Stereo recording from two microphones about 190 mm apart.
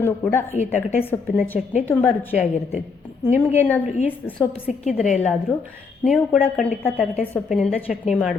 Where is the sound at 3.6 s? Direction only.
10° left (ahead or behind).